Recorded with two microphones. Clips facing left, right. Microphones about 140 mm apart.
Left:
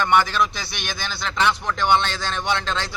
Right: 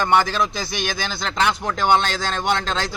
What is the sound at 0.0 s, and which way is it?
Speech, 40° right (ahead or behind).